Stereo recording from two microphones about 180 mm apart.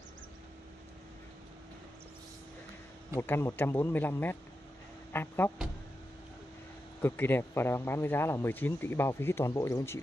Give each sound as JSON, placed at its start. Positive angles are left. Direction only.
{"t": 3.2, "sound": "speech", "side_deg": 15}
{"t": 7.0, "sound": "speech", "side_deg": 10}